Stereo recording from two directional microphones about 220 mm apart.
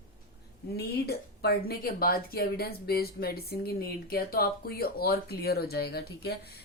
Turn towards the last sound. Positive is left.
turn(degrees=45)  # may be behind; listen again after turning